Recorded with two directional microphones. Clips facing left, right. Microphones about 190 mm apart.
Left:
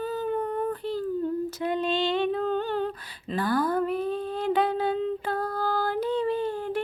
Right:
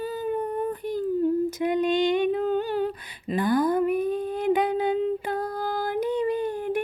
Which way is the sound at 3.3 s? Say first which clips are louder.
Right 3 dB; 15° right (ahead or behind).